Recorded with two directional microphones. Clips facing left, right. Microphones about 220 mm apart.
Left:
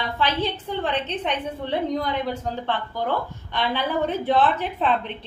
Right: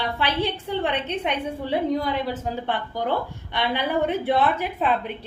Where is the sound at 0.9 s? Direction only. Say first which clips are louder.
Left 2 dB; 10° right (ahead or behind).